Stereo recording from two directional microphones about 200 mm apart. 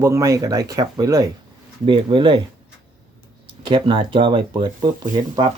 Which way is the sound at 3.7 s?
25° right (ahead or behind).